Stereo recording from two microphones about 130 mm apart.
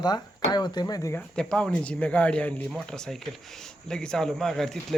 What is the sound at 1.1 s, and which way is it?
A man's voice, 5° left (ahead or behind).